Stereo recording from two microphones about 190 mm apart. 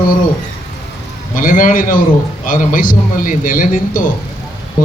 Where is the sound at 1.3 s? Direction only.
45° left (ahead or behind).